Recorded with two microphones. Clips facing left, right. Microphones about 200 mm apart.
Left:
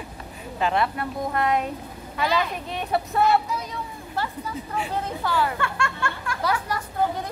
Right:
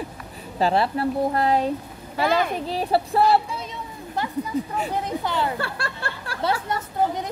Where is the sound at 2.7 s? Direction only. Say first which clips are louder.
Right 3 dB; 30° right (ahead or behind).